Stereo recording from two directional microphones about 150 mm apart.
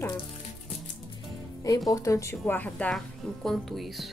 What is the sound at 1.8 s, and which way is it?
Speech, 20° left (ahead or behind).